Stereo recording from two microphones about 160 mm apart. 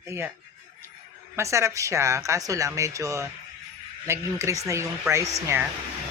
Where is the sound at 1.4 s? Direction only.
20° right (ahead or behind).